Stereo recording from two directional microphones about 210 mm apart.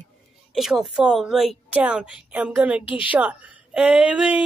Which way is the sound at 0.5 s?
Centre (ahead or behind).